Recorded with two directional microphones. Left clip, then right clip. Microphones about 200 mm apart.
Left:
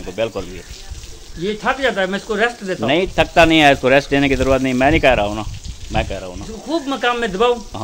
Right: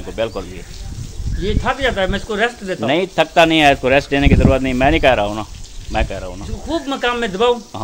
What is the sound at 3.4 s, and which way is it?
Speech, 10° left (ahead or behind).